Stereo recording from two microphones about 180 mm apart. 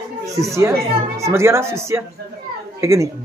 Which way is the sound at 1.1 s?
15° right (ahead or behind).